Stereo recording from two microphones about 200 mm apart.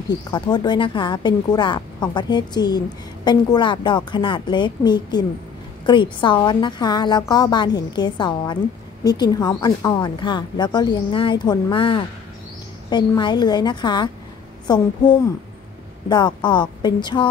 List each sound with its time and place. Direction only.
0.1 s speech: 20° left (ahead or behind)
16.1 s speech: 20° left (ahead or behind)